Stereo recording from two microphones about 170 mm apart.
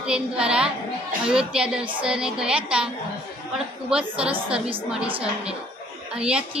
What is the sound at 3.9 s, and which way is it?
Speech, 5° right (ahead or behind).